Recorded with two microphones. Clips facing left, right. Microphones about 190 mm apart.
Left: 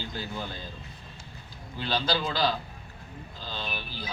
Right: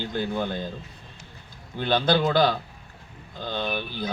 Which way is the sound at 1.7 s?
55° right (ahead or behind).